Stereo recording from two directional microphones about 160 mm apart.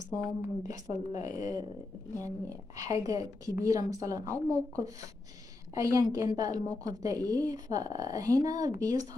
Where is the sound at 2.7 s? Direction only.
20° right (ahead or behind).